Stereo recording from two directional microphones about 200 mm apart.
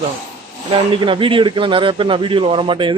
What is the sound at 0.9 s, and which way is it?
Speech, 25° right (ahead or behind).